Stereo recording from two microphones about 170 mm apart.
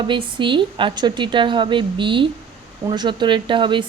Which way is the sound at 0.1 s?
30° right (ahead or behind).